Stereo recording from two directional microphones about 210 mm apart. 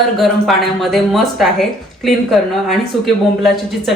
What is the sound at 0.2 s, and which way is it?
Speech, centre (ahead or behind).